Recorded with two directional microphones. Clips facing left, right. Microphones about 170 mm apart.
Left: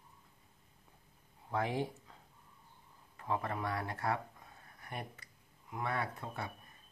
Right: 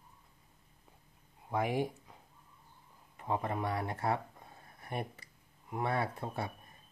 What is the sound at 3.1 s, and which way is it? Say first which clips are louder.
Speech: right 2 dB; 20° right (ahead or behind).